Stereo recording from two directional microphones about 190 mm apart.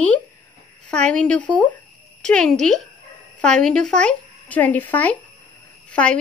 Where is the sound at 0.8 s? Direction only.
5° left (ahead or behind).